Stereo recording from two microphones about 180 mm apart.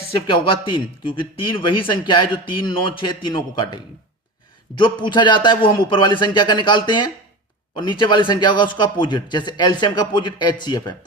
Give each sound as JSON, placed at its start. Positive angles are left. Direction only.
{"t": 0.1, "sound": "a man's voice", "side_deg": 30}